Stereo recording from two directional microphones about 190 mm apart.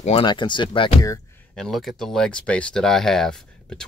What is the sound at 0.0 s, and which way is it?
Speech, 25° left (ahead or behind).